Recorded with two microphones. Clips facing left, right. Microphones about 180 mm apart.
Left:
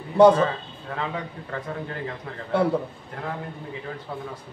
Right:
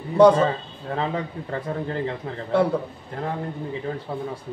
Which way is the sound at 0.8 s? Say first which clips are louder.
Right 5 dB; 35° right (ahead or behind).